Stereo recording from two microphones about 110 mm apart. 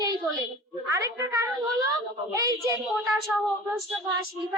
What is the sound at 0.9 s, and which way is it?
A child's voice, 30° right (ahead or behind).